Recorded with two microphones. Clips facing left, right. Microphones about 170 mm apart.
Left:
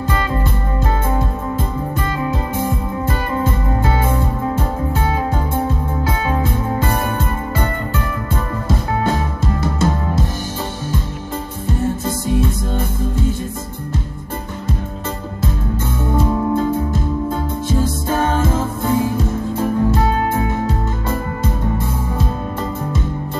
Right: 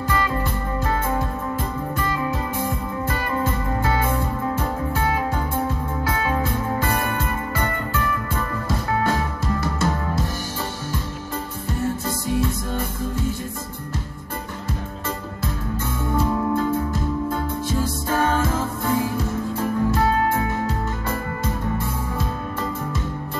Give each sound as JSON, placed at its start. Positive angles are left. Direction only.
{"t": 0.1, "sound": "music", "side_deg": 20}
{"t": 3.8, "sound": "music", "side_deg": 20}
{"t": 16.1, "sound": "music", "side_deg": 25}